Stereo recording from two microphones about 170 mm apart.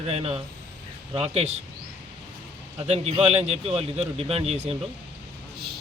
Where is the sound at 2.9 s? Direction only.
35° right (ahead or behind).